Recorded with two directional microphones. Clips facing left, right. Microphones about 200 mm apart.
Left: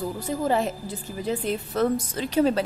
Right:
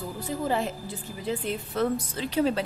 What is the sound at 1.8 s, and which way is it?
Speech, 45° left (ahead or behind).